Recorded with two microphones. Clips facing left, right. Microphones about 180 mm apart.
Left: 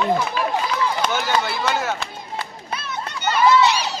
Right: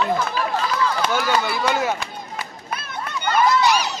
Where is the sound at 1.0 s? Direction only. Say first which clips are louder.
Right 1 dB; 5° right (ahead or behind).